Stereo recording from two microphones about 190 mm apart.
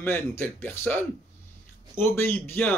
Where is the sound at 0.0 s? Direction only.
10° left (ahead or behind).